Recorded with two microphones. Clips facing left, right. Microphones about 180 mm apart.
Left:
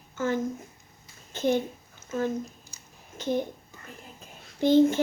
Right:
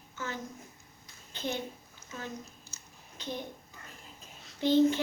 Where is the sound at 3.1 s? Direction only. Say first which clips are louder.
Left 11 dB; 50° left (ahead or behind).